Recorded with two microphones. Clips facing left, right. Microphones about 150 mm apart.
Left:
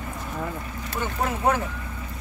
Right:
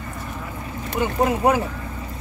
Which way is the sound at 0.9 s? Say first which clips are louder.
Right 7 dB; 15° right (ahead or behind).